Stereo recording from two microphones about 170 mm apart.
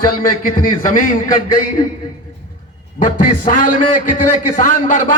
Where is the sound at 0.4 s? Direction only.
55° left (ahead or behind).